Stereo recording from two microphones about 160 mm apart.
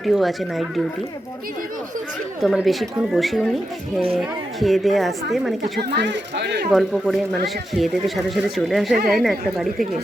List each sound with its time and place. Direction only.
0.0 s speech: centre (ahead or behind)
2.4 s speech: centre (ahead or behind)
5.9 s speech: 90° right
6.7 s speech: centre (ahead or behind)